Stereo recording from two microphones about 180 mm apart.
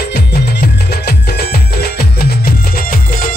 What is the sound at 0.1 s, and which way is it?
Music, 60° left (ahead or behind).